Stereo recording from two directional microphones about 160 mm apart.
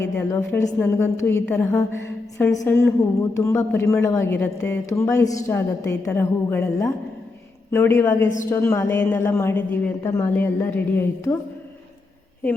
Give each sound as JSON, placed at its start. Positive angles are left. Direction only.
{"t": 0.0, "sound": "speech", "side_deg": 15}